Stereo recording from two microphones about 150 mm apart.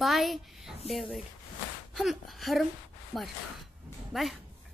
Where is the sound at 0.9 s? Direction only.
Centre (ahead or behind).